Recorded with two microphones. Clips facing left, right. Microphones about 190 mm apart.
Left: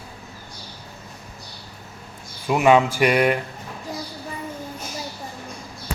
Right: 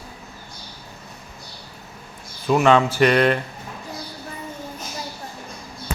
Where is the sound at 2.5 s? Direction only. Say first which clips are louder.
Even; 15° left (ahead or behind).